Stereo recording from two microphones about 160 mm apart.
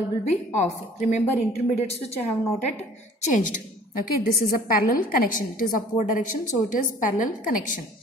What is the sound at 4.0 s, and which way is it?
A woman's voice, 65° left (ahead or behind).